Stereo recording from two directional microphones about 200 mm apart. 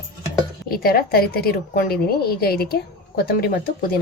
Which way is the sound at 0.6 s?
45° left (ahead or behind).